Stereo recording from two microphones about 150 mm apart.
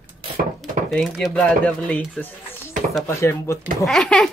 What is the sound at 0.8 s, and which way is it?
Speech, centre (ahead or behind).